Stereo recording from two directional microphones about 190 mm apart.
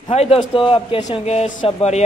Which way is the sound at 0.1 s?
30° left (ahead or behind).